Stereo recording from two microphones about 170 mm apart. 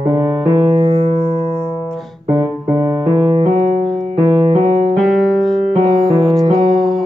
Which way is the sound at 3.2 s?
25° right (ahead or behind).